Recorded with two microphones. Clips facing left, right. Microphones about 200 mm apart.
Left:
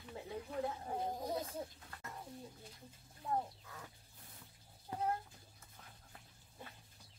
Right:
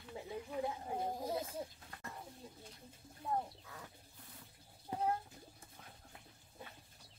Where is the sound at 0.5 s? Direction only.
10° right (ahead or behind).